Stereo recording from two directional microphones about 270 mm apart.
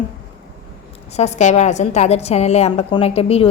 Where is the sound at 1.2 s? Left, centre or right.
Left.